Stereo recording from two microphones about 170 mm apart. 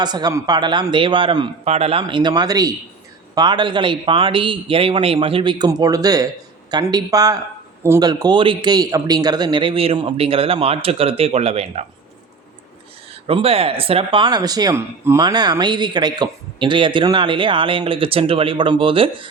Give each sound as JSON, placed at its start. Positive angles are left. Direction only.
{"t": 0.0, "sound": "a man's voice", "side_deg": -25}
{"t": 13.2, "sound": "speech", "side_deg": -35}